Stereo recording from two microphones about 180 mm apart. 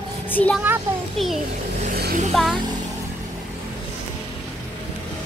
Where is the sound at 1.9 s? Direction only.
60° right (ahead or behind).